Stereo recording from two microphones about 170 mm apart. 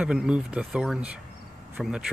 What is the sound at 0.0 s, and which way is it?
Speech, 5° right (ahead or behind).